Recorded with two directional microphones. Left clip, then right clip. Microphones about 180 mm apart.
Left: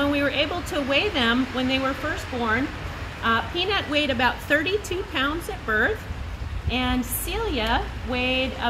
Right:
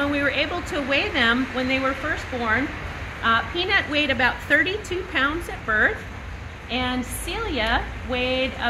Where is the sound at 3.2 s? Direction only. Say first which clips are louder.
Right 2 dB; 55° left (ahead or behind).